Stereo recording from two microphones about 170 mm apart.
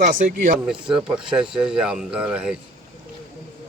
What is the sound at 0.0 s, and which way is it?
Speech, 55° right (ahead or behind).